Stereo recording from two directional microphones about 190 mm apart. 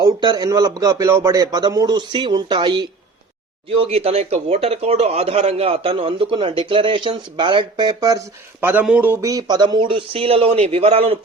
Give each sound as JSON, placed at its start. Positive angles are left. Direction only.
{"t": 0.0, "sound": "a man's voice", "side_deg": -20}
{"t": 8.6, "sound": "a man's voice", "side_deg": -10}